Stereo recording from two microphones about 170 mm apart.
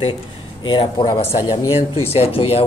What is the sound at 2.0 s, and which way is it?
Speech, 35° left (ahead or behind).